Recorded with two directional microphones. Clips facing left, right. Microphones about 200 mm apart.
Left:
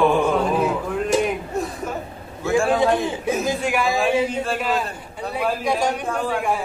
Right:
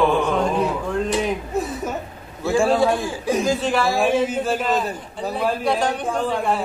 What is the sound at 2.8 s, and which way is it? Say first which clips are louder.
Chuckle: even; 20° left (ahead or behind).